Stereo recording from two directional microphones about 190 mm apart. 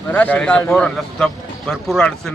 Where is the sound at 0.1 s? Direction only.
10° left (ahead or behind).